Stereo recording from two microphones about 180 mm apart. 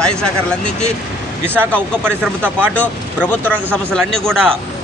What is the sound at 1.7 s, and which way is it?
Speech, 5° left (ahead or behind).